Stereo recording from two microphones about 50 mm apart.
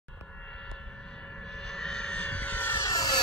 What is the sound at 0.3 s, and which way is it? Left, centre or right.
Vehicle, centre.